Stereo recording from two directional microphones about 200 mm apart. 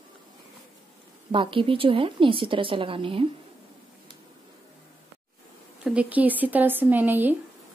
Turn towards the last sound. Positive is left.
turn(degrees=-10)  # may be behind; listen again after turning